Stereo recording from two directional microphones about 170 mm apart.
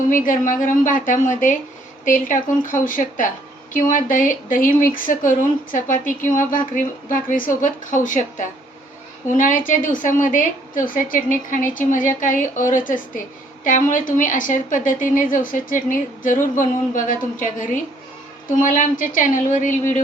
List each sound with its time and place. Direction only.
0.1 s a woman's voice: 50° left (ahead or behind)